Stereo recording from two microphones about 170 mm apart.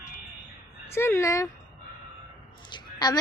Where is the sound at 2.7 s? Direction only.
25° left (ahead or behind).